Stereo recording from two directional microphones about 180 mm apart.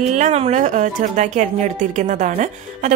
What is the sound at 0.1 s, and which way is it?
Speech, 40° right (ahead or behind).